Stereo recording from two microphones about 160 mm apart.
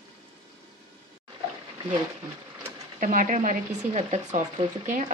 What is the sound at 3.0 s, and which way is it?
A woman's voice, 55° right (ahead or behind).